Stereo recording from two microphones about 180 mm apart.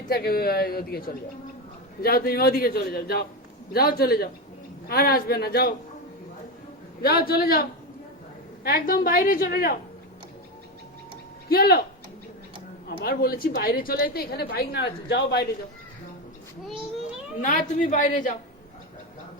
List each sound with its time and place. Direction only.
0.1 s a woman's voice: 60° left (ahead or behind)
7.0 s a woman's voice: 60° left (ahead or behind)
11.4 s a woman's voice: 55° left (ahead or behind)
12.9 s a woman's voice: 55° left (ahead or behind)
17.4 s a woman's voice: 45° left (ahead or behind)